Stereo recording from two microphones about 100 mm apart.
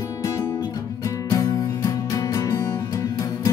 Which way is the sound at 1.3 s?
35° left (ahead or behind).